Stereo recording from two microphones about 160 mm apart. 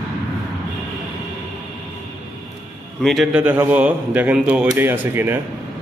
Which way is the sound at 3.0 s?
Centre (ahead or behind).